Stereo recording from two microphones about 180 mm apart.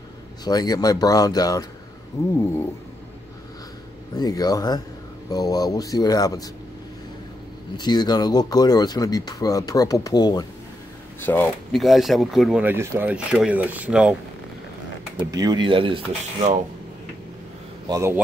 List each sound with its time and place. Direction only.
0.5 s speech: 20° left (ahead or behind)
4.2 s speech: 20° left (ahead or behind)
7.7 s speech: 25° left (ahead or behind)
11.2 s speech: 10° left (ahead or behind)
11.8 s speech: centre (ahead or behind)
15.3 s speech: 25° right (ahead or behind)
17.8 s speech: 15° right (ahead or behind)